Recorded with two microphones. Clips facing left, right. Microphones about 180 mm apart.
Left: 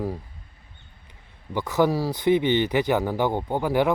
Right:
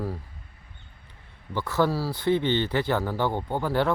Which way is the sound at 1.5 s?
15° left (ahead or behind).